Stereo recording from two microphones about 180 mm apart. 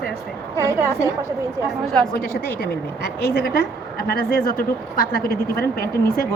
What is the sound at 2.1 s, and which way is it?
A woman's voice, 55° left (ahead or behind).